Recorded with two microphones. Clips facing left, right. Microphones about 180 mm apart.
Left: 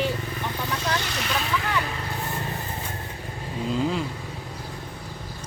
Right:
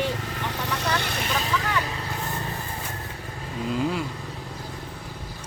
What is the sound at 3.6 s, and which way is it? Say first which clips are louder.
Speech: left 1 dB; 5° right (ahead or behind).